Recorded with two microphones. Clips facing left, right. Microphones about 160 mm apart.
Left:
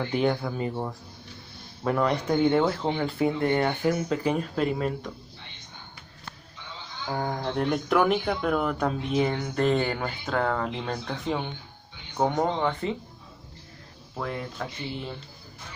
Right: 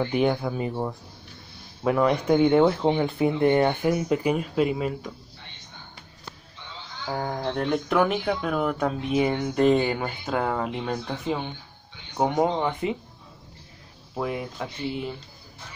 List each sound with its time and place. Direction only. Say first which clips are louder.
0.0 s speech: right 2 dB; 15° right (ahead or behind)
2.3 s speech: right 4 dB; 20° right (ahead or behind)
7.1 s speech: right 1 dB; centre (ahead or behind)
14.1 s speech: right 4 dB; 15° right (ahead or behind)